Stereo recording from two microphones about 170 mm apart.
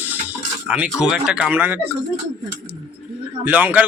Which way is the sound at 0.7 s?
5° right (ahead or behind).